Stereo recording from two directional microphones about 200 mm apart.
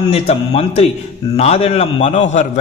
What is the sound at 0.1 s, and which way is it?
A man's voice, 30° left (ahead or behind).